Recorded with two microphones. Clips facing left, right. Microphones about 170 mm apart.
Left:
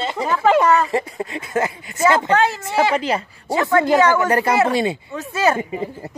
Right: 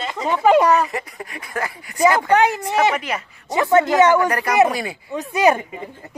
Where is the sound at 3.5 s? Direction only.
20° right (ahead or behind).